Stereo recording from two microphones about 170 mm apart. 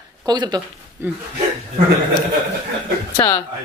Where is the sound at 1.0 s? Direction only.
15° right (ahead or behind).